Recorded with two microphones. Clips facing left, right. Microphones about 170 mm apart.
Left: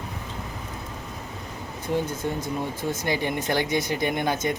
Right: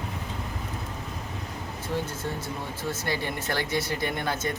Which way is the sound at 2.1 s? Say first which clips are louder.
Left 5 dB; 15° left (ahead or behind).